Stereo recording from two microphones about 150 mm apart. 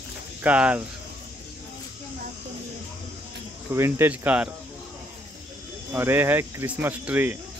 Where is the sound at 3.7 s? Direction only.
15° right (ahead or behind).